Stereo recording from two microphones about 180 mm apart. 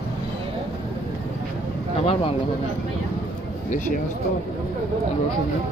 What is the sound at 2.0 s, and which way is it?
Speech, 35° left (ahead or behind).